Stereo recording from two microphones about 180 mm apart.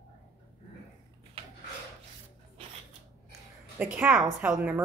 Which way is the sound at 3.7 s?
5° right (ahead or behind).